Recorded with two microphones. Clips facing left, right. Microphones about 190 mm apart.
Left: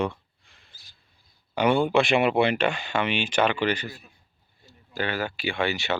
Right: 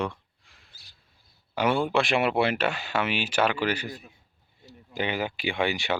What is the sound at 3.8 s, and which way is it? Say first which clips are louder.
Speech: right 1 dB; 20° right (ahead or behind).